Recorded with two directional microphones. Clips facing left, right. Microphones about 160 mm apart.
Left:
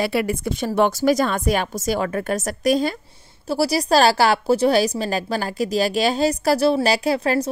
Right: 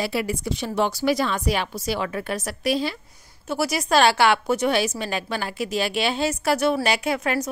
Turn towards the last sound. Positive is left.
turn(degrees=30)  # may be behind; listen again after turning